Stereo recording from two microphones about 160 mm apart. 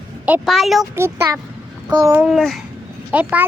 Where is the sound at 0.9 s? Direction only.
15° right (ahead or behind).